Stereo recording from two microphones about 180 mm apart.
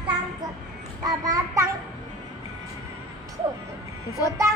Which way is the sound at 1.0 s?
20° right (ahead or behind).